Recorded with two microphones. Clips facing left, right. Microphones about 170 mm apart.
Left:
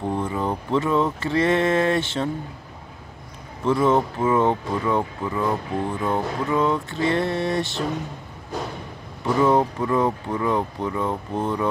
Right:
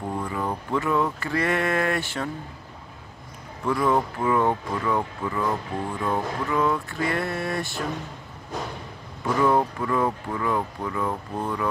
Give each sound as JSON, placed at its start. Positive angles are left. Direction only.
{"t": 0.0, "sound": "speech", "side_deg": 20}
{"t": 3.6, "sound": "speech", "side_deg": 20}
{"t": 9.2, "sound": "speech", "side_deg": 20}